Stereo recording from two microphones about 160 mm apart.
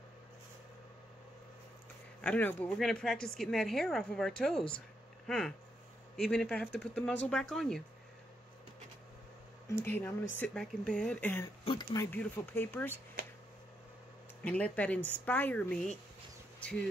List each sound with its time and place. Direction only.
2.2 s a woman's voice: 10° left (ahead or behind)
9.7 s speech: 15° left (ahead or behind)
11.6 s speech: 30° left (ahead or behind)
12.1 s speech: 10° left (ahead or behind)
14.4 s speech: 10° left (ahead or behind)